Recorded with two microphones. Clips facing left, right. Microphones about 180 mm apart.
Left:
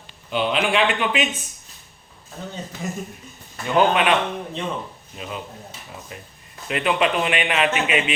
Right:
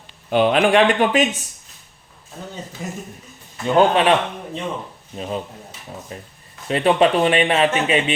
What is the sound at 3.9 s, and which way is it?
Speech, 35° right (ahead or behind).